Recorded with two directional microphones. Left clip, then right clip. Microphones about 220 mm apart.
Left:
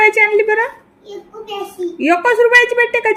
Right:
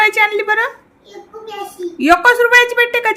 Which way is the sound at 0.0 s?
20° right (ahead or behind).